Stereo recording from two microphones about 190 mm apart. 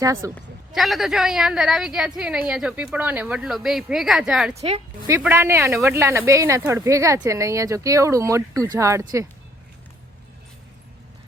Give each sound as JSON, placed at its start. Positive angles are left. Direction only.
{"t": 0.0, "sound": "speech", "side_deg": -15}
{"t": 0.3, "sound": "a man's voice", "side_deg": 0}